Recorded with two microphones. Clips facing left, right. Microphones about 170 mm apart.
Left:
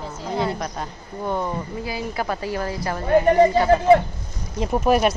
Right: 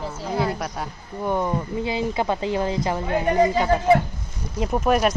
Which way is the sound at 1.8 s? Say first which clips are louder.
Right 5 dB; 25° right (ahead or behind).